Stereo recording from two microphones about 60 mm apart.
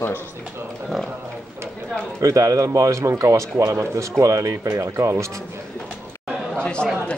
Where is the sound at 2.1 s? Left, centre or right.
Right.